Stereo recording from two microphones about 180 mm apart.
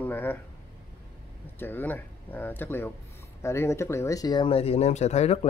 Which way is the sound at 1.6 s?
10° left (ahead or behind).